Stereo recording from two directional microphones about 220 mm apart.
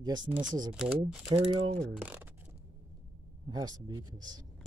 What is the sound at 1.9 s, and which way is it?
Speech, 5° right (ahead or behind).